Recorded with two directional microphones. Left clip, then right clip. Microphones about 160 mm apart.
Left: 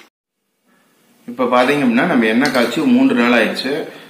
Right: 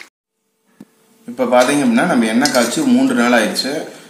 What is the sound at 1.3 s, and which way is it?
Speech, 25° right (ahead or behind).